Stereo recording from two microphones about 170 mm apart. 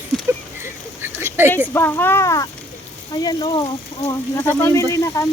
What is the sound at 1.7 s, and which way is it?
Speech, 15° left (ahead or behind).